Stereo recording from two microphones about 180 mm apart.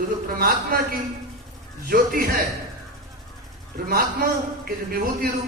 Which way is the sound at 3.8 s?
55° right (ahead or behind).